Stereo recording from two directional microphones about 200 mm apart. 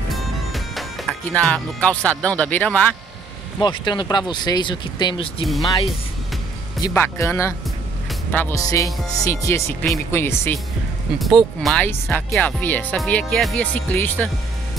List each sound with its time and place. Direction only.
0.1 s music: centre (ahead or behind)
3.6 s speech: 25° left (ahead or behind)
6.8 s speech: 15° left (ahead or behind)
11.1 s speech: centre (ahead or behind)